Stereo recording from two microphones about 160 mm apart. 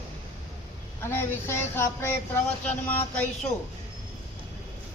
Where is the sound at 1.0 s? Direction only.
15° left (ahead or behind).